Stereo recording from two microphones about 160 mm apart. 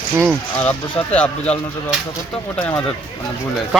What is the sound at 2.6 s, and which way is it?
Speech, 10° left (ahead or behind).